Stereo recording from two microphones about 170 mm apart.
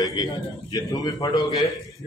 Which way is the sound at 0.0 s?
25° left (ahead or behind).